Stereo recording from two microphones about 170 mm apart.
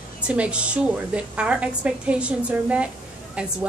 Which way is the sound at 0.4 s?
5° right (ahead or behind).